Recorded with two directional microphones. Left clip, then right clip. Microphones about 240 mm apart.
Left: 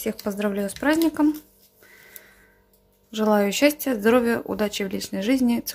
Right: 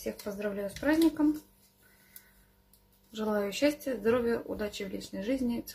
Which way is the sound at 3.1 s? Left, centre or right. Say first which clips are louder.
Left 11 dB; left.